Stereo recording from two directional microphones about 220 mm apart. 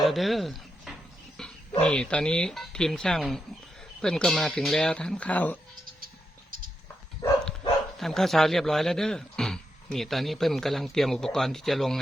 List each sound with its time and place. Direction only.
0.0 s speech: centre (ahead or behind)
1.4 s wild animals: 5° left (ahead or behind)
1.8 s a man's voice: 5° left (ahead or behind)
6.5 s a sound: 40° right (ahead or behind)
7.9 s a man's voice: centre (ahead or behind)